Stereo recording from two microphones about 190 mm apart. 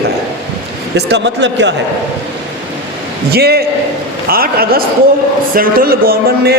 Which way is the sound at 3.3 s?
55° right (ahead or behind).